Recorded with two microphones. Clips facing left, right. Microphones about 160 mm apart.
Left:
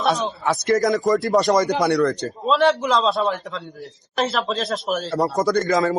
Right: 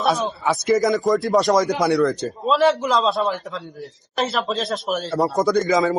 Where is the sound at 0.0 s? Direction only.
Centre (ahead or behind).